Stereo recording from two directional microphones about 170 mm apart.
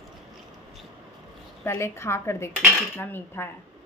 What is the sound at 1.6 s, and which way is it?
A woman's voice, 15° left (ahead or behind).